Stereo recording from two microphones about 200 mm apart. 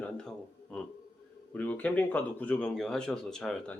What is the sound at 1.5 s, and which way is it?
Speech, 10° left (ahead or behind).